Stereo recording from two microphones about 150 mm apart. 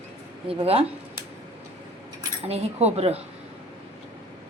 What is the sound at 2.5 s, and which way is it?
Speech, 45° right (ahead or behind).